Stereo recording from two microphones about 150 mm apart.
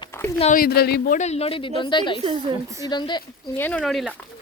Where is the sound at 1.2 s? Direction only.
45° left (ahead or behind); by 3.2 s 30° left (ahead or behind).